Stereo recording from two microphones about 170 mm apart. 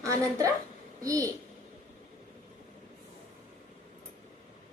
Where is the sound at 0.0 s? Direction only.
20° right (ahead or behind).